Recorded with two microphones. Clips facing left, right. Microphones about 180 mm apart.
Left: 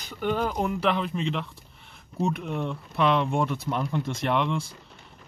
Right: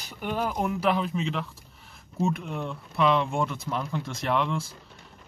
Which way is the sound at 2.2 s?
20° left (ahead or behind).